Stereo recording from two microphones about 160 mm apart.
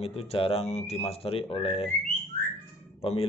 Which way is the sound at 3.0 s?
40° left (ahead or behind).